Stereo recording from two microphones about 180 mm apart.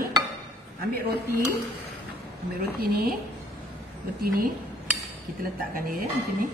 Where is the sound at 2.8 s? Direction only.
55° right (ahead or behind).